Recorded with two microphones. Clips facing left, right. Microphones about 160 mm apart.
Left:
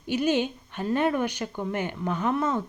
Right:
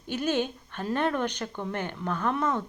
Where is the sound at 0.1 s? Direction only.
10° left (ahead or behind).